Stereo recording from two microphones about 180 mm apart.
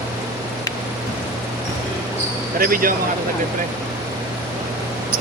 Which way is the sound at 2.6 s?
50° right (ahead or behind).